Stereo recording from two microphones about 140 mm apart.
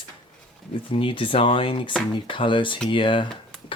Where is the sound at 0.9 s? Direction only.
40° left (ahead or behind).